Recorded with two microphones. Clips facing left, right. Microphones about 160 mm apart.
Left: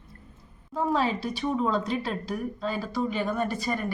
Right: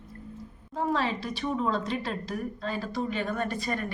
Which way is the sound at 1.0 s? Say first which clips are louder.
Left 3 dB; centre (ahead or behind).